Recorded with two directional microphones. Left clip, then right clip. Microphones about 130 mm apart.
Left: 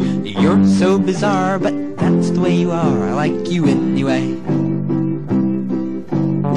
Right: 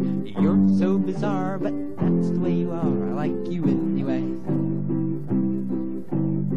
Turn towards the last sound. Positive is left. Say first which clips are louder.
# left 8 dB
turn(degrees=-40)  # may be behind; listen again after turning